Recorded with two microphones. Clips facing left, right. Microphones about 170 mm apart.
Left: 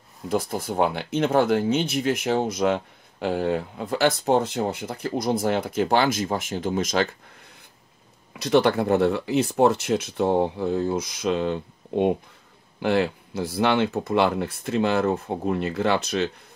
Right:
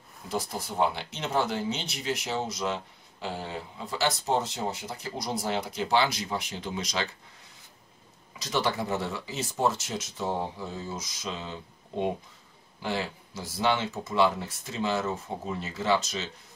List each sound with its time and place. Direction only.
0.3 s speech: 55° left (ahead or behind)
8.3 s speech: 60° left (ahead or behind)